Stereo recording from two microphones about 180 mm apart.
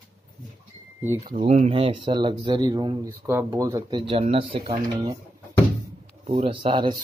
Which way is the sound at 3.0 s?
15° right (ahead or behind).